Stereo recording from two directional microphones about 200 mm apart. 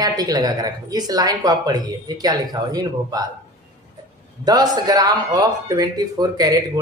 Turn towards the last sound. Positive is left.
turn(degrees=-20)  # may be behind; listen again after turning